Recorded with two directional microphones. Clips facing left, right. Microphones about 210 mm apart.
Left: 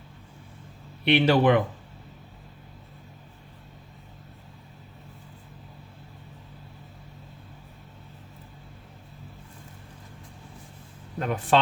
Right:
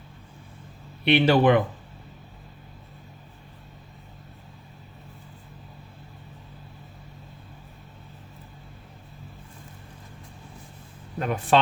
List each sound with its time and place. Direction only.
1.0 s speech: 25° right (ahead or behind)
11.2 s speech: 10° right (ahead or behind)